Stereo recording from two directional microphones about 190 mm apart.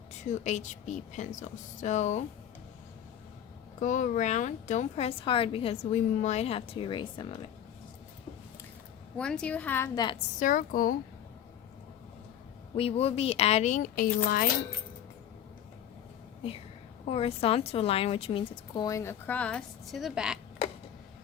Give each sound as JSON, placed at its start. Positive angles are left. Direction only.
{"t": 0.3, "sound": "a woman's voice", "side_deg": 40}
{"t": 3.8, "sound": "a woman's voice", "side_deg": 40}
{"t": 9.1, "sound": "a woman's voice", "side_deg": 5}
{"t": 10.4, "sound": "speech", "side_deg": 45}
{"t": 12.7, "sound": "a woman's voice", "side_deg": 30}
{"t": 16.4, "sound": "a woman's voice", "side_deg": 30}